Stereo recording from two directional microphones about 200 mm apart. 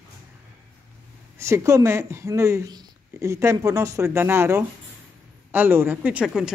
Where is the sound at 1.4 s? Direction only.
15° right (ahead or behind).